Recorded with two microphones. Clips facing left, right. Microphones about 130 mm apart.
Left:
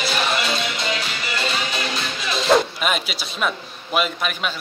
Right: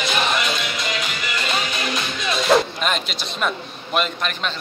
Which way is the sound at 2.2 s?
Centre (ahead or behind).